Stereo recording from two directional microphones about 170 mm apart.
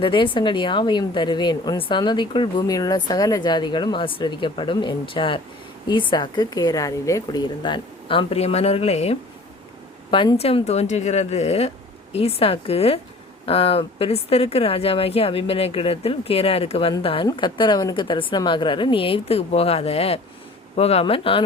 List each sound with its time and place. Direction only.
0.0 s a woman's voice: 30° left (ahead or behind)